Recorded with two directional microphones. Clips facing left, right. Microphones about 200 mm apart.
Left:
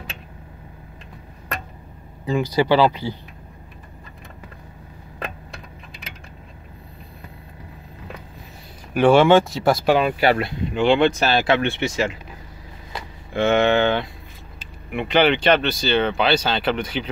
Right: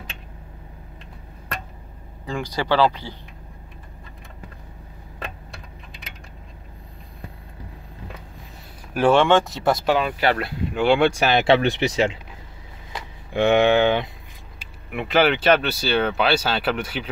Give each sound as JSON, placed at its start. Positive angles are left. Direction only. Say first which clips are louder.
{"t": 2.2, "sound": "speech", "louder": "left 6 dB", "side_deg": 10}
{"t": 8.9, "sound": "speech", "louder": "left 3 dB", "side_deg": 5}
{"t": 9.8, "sound": "speech", "louder": "left 5 dB", "side_deg": 15}
{"t": 10.3, "sound": "speech", "louder": "left 2 dB", "side_deg": -5}
{"t": 11.4, "sound": "speech", "louder": "right 2 dB", "side_deg": -35}
{"t": 12.9, "sound": "speech", "louder": "right 1 dB", "side_deg": -15}
{"t": 14.9, "sound": "speech", "louder": "left 1 dB", "side_deg": 0}